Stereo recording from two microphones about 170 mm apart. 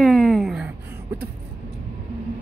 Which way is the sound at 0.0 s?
5° left (ahead or behind).